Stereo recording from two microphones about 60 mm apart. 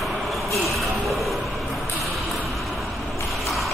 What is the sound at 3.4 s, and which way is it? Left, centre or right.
Mechanisms, centre.